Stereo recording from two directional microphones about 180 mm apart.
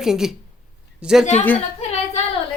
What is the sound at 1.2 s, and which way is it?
Speech, 40° left (ahead or behind).